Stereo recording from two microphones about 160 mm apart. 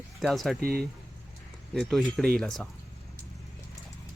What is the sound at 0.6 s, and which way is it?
Speech, 70° right (ahead or behind).